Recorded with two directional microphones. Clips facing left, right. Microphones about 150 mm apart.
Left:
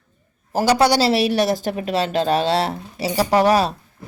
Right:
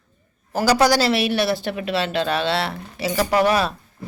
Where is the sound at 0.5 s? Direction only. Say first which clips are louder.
Left 1 dB; 25° left (ahead or behind).